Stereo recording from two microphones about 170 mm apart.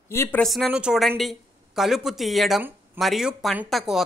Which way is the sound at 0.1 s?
15° left (ahead or behind).